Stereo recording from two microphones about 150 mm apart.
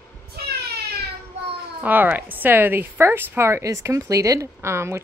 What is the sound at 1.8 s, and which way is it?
A woman's voice, 10° right (ahead or behind).